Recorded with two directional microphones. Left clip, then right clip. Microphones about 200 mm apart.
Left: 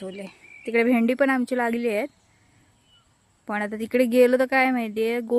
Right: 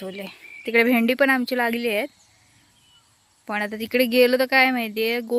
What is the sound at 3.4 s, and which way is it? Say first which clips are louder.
A woman's voice: right 1 dB; 15° left (ahead or behind).